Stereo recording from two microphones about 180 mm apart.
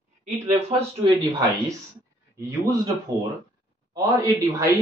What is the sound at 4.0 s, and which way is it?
Speech, 15° right (ahead or behind).